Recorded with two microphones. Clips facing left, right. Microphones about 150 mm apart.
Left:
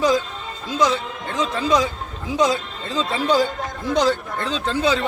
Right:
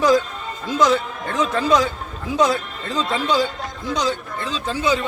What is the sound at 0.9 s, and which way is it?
A man's voice, 25° left (ahead or behind).